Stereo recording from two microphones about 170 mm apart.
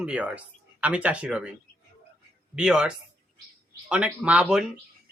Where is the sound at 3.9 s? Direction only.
5° right (ahead or behind).